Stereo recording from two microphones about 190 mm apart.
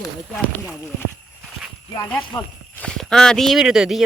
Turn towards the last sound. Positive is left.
turn(degrees=-5)  # may be behind; listen again after turning